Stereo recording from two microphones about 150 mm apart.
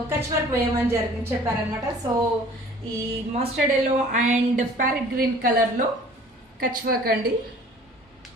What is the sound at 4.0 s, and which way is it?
A woman's voice, 55° right (ahead or behind).